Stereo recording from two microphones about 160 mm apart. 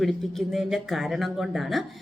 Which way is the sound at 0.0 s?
Centre (ahead or behind).